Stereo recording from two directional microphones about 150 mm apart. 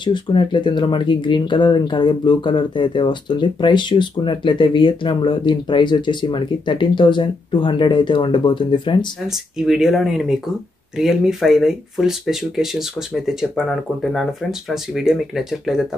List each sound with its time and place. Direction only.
0.0 s speech: 30° left (ahead or behind)
9.3 s speech: centre (ahead or behind)